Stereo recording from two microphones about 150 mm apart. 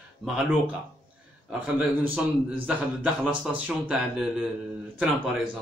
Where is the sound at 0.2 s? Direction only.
5° right (ahead or behind).